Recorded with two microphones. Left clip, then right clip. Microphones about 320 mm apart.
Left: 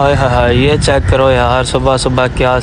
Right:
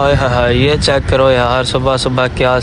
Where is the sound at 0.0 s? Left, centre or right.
Centre.